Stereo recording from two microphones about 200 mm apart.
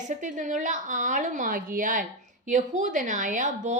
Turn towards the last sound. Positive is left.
turn(degrees=-35)  # may be behind; listen again after turning